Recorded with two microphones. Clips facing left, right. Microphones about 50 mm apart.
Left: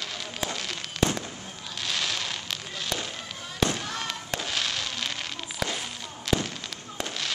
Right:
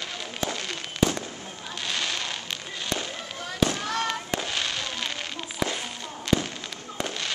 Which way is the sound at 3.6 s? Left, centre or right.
Centre.